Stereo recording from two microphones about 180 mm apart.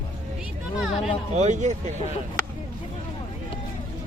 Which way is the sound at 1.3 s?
40° right (ahead or behind).